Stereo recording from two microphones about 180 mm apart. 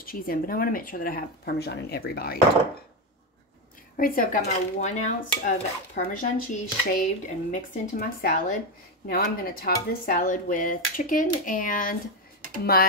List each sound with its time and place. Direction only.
0.0 s speech: 55° left (ahead or behind)
3.9 s dishes: 50° left (ahead or behind)